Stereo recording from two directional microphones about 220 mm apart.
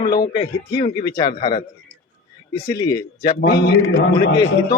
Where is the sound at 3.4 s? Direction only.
50° left (ahead or behind).